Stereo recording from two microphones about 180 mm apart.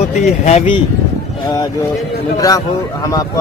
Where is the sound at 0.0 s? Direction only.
40° left (ahead or behind).